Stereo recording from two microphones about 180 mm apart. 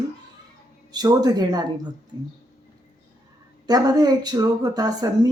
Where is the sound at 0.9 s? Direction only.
20° right (ahead or behind).